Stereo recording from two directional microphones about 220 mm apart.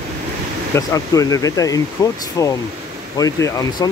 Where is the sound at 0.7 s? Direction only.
15° left (ahead or behind).